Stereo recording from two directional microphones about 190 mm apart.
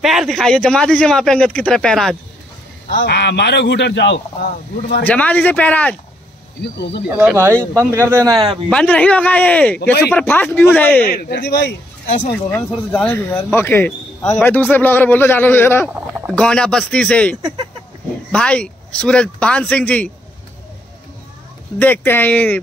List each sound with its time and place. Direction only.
0.0 s speech: centre (ahead or behind)
3.0 s speech: 60° left (ahead or behind)
5.0 s a man's voice: 10° left (ahead or behind)
6.6 s speech: 60° left (ahead or behind)
7.7 s speech: 15° right (ahead or behind)
8.5 s a man's voice: 5° left (ahead or behind)
11.1 s speech: 55° left (ahead or behind)
12.4 s a man's voice: 10° left (ahead or behind)
21.7 s a man's voice: 10° left (ahead or behind)